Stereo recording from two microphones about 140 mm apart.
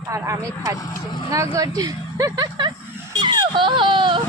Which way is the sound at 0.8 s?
25° left (ahead or behind).